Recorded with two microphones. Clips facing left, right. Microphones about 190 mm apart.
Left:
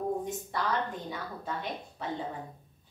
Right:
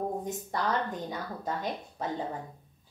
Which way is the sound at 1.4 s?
40° right (ahead or behind).